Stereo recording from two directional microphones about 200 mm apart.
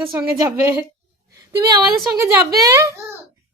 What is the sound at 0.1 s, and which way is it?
A child's voice, 15° right (ahead or behind).